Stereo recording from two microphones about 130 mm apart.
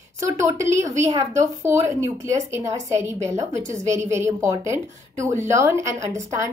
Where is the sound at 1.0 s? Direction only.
25° right (ahead or behind).